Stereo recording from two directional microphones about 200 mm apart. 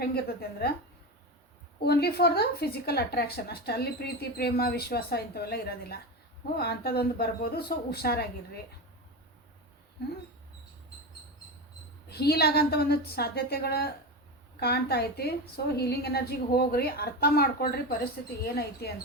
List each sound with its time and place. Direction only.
0.0 s speech: 50° left (ahead or behind)
1.8 s speech: 55° left (ahead or behind)
12.0 s speech: 55° left (ahead or behind)